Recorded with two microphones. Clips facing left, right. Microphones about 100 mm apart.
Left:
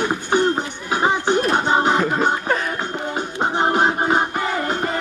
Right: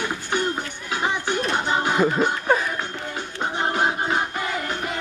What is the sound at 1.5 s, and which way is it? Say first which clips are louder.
Music: left 4 dB; 35° left (ahead or behind).